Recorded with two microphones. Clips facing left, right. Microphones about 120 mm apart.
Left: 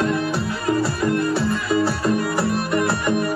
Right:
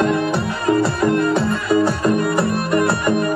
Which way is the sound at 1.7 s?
50° right (ahead or behind).